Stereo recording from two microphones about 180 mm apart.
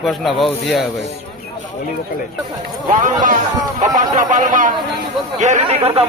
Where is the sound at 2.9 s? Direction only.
50° right (ahead or behind).